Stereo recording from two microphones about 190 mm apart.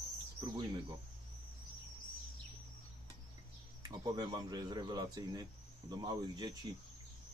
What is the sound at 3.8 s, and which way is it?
Speech, 20° right (ahead or behind).